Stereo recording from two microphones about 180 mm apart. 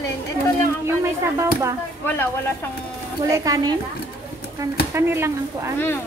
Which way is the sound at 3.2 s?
20° right (ahead or behind).